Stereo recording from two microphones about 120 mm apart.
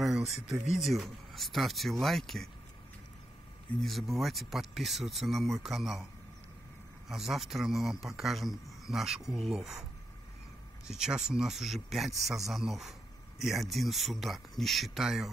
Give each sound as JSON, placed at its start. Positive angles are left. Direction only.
{"t": 0.0, "sound": "a sound", "side_deg": 0}
{"t": 0.7, "sound": "a man's voice", "side_deg": 0}
{"t": 3.8, "sound": "a man's voice", "side_deg": 0}
{"t": 7.1, "sound": "a man's voice", "side_deg": 0}
{"t": 10.9, "sound": "a man's voice", "side_deg": -5}